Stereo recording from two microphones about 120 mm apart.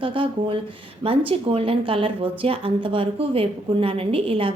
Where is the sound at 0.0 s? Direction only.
45° right (ahead or behind).